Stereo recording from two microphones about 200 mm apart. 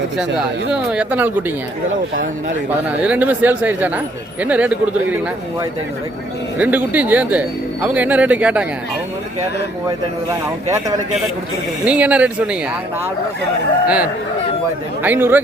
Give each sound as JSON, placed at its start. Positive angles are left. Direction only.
{"t": 0.2, "sound": "speech", "side_deg": -5}
{"t": 3.0, "sound": "speech", "side_deg": -5}
{"t": 9.8, "sound": "speech", "side_deg": -15}
{"t": 11.9, "sound": "speech", "side_deg": -5}
{"t": 13.8, "sound": "speech", "side_deg": -5}